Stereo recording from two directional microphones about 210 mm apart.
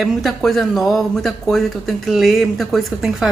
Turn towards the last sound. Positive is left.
turn(degrees=0)  # may be behind; listen again after turning